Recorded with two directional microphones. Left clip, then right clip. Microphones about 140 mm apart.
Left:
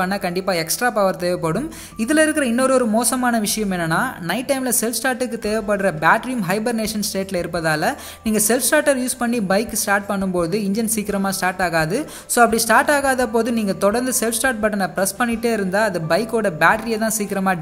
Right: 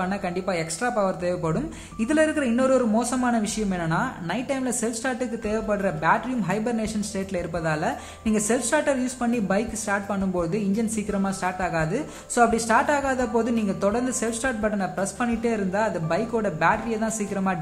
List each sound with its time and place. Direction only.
0.0 s speech: 25° left (ahead or behind)